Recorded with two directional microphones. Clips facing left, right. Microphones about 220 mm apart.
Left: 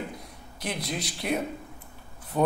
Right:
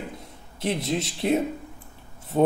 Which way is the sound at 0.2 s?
25° right (ahead or behind).